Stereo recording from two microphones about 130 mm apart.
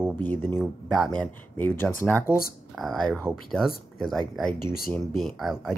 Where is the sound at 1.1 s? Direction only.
10° left (ahead or behind).